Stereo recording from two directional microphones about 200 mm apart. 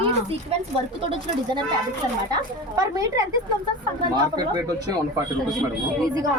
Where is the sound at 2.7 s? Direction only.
15° right (ahead or behind).